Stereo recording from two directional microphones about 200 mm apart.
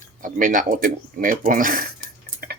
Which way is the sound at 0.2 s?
40° right (ahead or behind).